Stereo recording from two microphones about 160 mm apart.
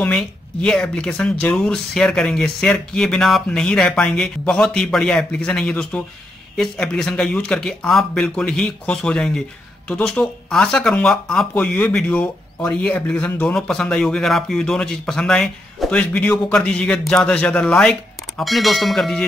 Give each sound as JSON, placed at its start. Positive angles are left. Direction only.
{"t": 0.0, "sound": "speech", "side_deg": 5}